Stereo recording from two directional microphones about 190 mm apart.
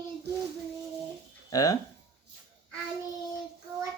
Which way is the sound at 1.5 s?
20° left (ahead or behind).